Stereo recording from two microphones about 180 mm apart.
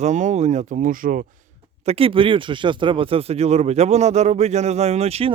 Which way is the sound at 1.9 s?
30° right (ahead or behind).